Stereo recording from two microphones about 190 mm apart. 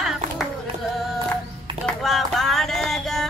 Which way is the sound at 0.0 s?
Centre (ahead or behind).